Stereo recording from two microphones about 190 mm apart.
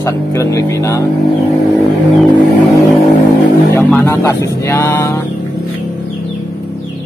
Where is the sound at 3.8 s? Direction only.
10° left (ahead or behind).